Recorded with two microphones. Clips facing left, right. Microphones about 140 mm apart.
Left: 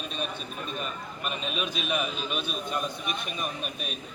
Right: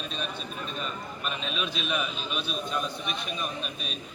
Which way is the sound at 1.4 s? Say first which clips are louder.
Left 1 dB; 50° left (ahead or behind).